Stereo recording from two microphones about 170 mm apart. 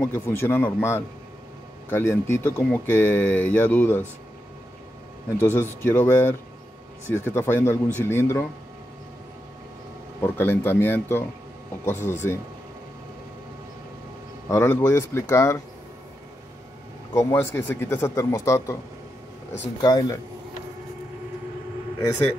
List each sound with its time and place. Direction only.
0.0 s speech: 15° left (ahead or behind)
5.4 s speech: 15° left (ahead or behind)
10.2 s speech: 10° left (ahead or behind)
14.5 s speech: 15° left (ahead or behind)
17.1 s speech: 15° left (ahead or behind)
19.8 s speech: 25° left (ahead or behind)